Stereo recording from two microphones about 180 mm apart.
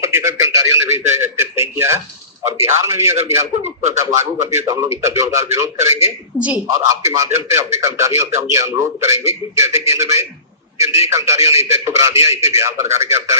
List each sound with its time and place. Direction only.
0.0 s a man's voice: 15° right (ahead or behind)
1.2 s a sound: 15° right (ahead or behind)
2.6 s speech: 15° right (ahead or behind)
6.7 s speech: 20° right (ahead or behind)